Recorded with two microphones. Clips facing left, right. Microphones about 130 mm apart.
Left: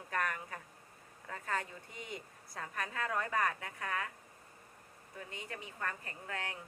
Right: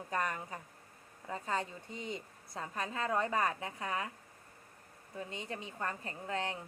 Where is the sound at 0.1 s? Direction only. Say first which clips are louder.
Right 1 dB; 20° right (ahead or behind).